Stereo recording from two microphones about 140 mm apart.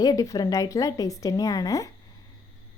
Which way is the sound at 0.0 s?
25° left (ahead or behind).